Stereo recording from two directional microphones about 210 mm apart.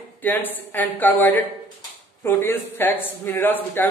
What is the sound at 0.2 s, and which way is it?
Speech, 10° left (ahead or behind).